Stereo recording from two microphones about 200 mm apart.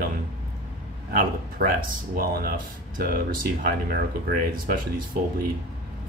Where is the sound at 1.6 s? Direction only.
50° right (ahead or behind).